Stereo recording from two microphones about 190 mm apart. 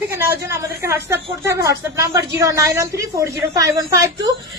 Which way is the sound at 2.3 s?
15° right (ahead or behind).